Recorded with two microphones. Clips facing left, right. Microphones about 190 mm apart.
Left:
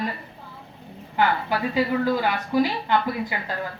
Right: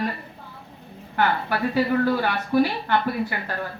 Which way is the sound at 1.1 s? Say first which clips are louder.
Even; 15° left (ahead or behind).